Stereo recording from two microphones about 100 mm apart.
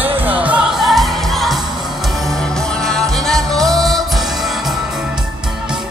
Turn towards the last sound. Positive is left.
turn(degrees=0)  # may be behind; listen again after turning